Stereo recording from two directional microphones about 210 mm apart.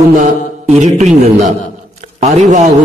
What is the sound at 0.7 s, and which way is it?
A man's voice, 35° right (ahead or behind).